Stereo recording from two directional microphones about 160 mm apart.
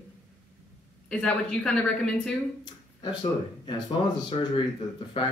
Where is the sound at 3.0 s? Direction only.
30° left (ahead or behind).